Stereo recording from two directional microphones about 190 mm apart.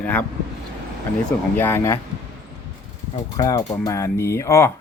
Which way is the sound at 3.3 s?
20° left (ahead or behind).